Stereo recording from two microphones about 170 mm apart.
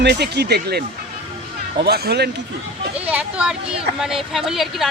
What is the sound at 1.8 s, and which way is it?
Speech, 70° right (ahead or behind).